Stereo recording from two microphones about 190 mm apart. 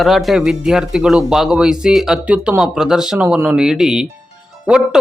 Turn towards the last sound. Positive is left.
turn(degrees=-5)  # may be behind; listen again after turning